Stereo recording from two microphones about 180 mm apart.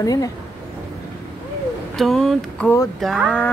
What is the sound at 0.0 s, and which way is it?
Speech, 20° left (ahead or behind).